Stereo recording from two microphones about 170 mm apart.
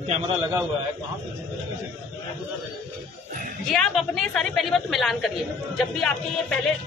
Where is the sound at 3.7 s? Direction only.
Centre (ahead or behind).